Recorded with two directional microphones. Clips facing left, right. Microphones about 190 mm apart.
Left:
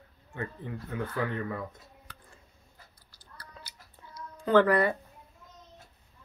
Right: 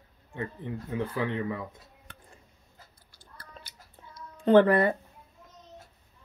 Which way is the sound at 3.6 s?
50° right (ahead or behind).